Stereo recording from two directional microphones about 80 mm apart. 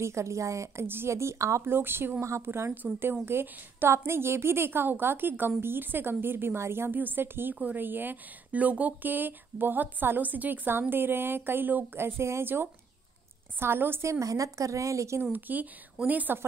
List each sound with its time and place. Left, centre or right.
0.0 s speech: right
1.7 s a woman's voice: right
14.2 s speech: right
15.3 s a woman's voice: right